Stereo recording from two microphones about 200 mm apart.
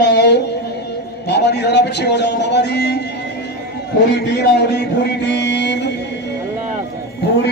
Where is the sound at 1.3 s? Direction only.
55° left (ahead or behind).